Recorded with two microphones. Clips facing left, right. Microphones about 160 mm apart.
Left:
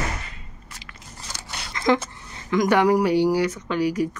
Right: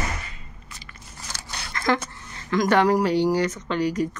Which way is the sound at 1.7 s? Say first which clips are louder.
Left 3 dB; 15° left (ahead or behind).